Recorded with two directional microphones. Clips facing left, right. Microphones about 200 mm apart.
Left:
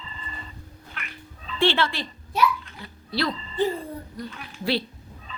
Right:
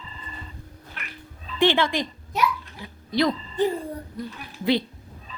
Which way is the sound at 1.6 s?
15° right (ahead or behind).